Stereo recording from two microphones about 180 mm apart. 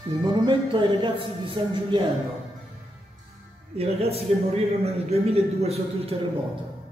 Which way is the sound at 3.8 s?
35° right (ahead or behind).